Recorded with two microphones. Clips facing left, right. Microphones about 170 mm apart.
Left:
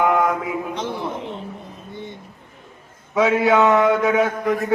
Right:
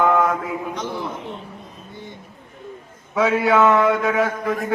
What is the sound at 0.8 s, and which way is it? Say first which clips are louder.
Speech: left 1 dB; 25° left (ahead or behind).